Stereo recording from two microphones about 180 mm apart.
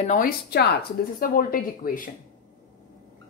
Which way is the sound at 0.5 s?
65° left (ahead or behind).